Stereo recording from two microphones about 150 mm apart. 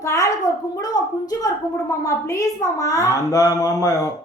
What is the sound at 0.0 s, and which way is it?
A woman's voice, 20° left (ahead or behind).